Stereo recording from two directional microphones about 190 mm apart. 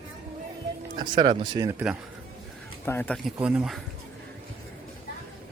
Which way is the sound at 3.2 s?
5° right (ahead or behind).